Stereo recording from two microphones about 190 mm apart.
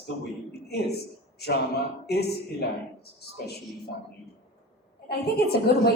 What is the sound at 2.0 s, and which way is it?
A woman's voice, 55° left (ahead or behind).